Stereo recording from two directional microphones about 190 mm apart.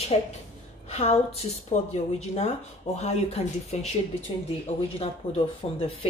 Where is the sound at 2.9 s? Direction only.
35° left (ahead or behind).